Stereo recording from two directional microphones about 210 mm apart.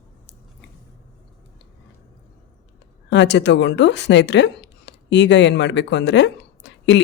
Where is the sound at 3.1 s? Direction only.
55° left (ahead or behind).